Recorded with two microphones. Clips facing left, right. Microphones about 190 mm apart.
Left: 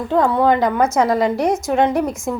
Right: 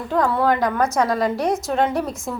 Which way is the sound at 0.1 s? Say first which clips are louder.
Left 4 dB; 20° left (ahead or behind).